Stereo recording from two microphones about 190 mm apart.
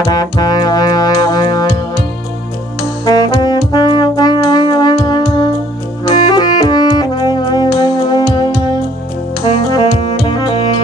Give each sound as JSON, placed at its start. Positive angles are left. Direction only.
{"t": 0.1, "sound": "music", "side_deg": 20}
{"t": 3.1, "sound": "brass instrument", "side_deg": 20}
{"t": 6.0, "sound": "music", "side_deg": 25}
{"t": 9.7, "sound": "saxophone", "side_deg": 25}